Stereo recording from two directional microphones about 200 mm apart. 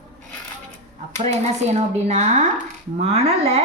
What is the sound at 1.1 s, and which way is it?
Speech, 35° right (ahead or behind).